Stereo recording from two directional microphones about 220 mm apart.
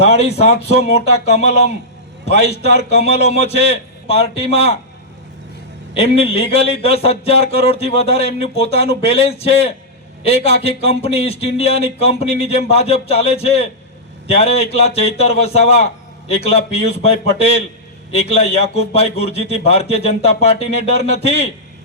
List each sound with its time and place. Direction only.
0.0 s speech: 30° left (ahead or behind)
5.9 s speech: 25° left (ahead or behind)